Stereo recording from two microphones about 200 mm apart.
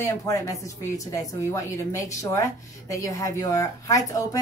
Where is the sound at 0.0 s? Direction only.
15° left (ahead or behind).